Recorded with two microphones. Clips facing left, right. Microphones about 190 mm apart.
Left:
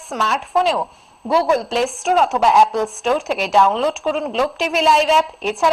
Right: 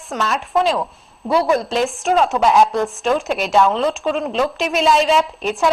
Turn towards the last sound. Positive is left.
turn(degrees=0)  # may be behind; listen again after turning